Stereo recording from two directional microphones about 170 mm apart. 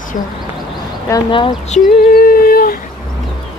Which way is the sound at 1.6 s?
50° left (ahead or behind).